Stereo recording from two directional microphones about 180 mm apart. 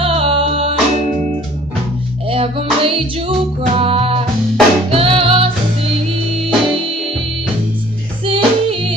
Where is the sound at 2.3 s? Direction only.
30° right (ahead or behind).